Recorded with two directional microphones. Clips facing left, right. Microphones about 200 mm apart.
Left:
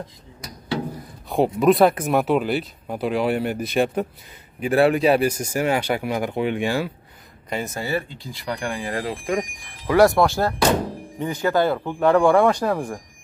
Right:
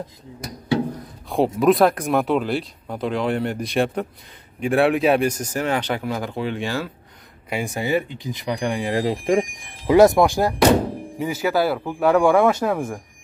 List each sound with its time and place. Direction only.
0.9 s a man's voice: centre (ahead or behind)
7.4 s speech: 10° right (ahead or behind)